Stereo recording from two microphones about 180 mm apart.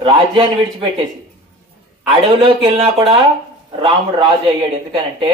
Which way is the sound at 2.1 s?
30° right (ahead or behind).